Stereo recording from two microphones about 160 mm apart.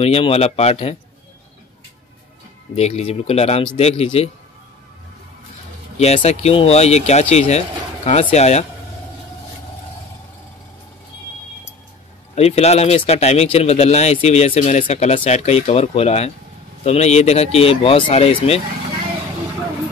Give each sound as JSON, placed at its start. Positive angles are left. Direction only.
{"t": 0.0, "sound": "speech", "side_deg": 40}
{"t": 2.7, "sound": "speech", "side_deg": 40}
{"t": 5.9, "sound": "speech", "side_deg": 40}
{"t": 12.4, "sound": "speech", "side_deg": 40}